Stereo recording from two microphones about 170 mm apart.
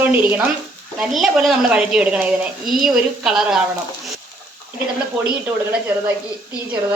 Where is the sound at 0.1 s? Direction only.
10° right (ahead or behind).